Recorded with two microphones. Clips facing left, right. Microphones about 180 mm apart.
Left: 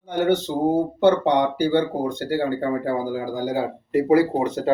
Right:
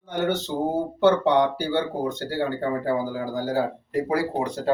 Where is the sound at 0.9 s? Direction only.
15° left (ahead or behind).